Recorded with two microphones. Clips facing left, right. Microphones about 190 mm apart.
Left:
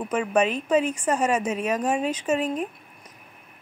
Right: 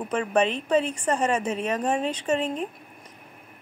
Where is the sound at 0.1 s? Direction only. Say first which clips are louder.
Left 1 dB; 5° left (ahead or behind).